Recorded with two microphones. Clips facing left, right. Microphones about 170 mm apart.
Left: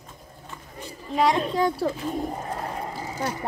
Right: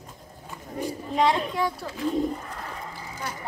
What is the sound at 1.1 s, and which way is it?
Speech, 10° left (ahead or behind).